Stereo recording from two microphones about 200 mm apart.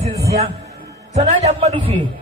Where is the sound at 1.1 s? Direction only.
35° right (ahead or behind).